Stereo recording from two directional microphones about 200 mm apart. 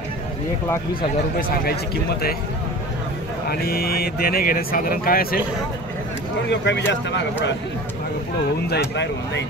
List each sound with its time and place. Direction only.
1.6 s speech: 50° left (ahead or behind)
3.4 s speech: 50° left (ahead or behind)
6.5 s speech: 60° left (ahead or behind)
8.6 s speech: 60° left (ahead or behind)